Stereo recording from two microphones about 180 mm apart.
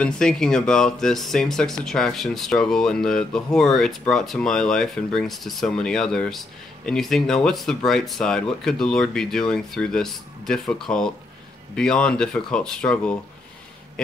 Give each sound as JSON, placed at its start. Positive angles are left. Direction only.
{"t": 0.0, "sound": "speech", "side_deg": 5}